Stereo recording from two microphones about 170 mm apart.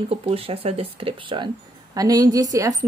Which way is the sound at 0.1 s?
35° right (ahead or behind).